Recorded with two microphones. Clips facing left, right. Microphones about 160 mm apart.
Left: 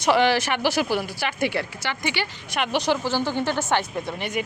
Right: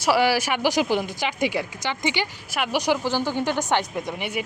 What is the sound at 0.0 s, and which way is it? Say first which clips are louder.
A woman's voice: left 1 dB; 5° right (ahead or behind).